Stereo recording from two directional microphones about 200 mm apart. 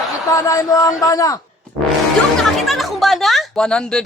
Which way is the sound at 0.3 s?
15° left (ahead or behind).